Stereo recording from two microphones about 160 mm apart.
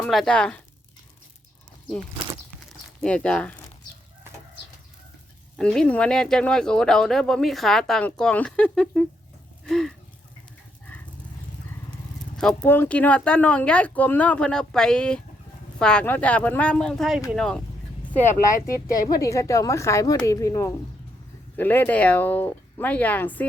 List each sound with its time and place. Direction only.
0.0 s speech: 5° left (ahead or behind)
3.0 s speech: 5° left (ahead or behind)
5.5 s speech: 5° left (ahead or behind)
12.6 s speech: 10° left (ahead or behind)
19.0 s speech: 20° left (ahead or behind)